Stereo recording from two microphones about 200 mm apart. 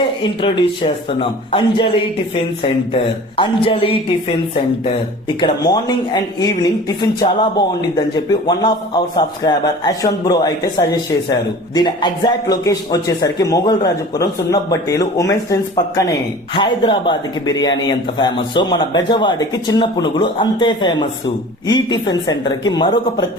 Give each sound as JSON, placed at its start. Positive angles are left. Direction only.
{"t": 0.2, "sound": "speech", "side_deg": 25}
{"t": 2.9, "sound": "speech", "side_deg": 25}
{"t": 5.4, "sound": "speech", "side_deg": 20}